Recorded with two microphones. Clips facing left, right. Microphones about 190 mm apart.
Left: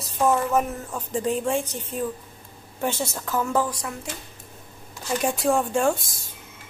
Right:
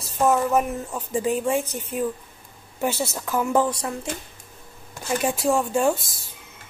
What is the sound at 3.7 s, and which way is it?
Speech, 30° right (ahead or behind).